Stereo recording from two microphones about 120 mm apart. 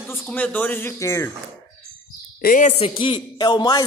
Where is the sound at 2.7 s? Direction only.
50° left (ahead or behind).